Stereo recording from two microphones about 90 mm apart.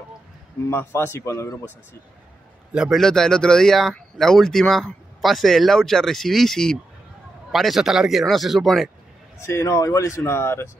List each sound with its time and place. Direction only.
0.7 s a man's voice: 25° left (ahead or behind)
2.7 s a man's voice: 10° right (ahead or behind)
3.0 s speech: 5° left (ahead or behind)
9.5 s speech: 35° left (ahead or behind)